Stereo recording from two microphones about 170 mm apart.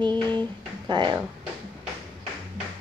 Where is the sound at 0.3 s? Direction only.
25° right (ahead or behind).